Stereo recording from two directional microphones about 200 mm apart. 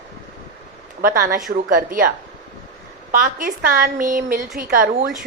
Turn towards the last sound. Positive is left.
turn(degrees=-45)  # may be behind; listen again after turning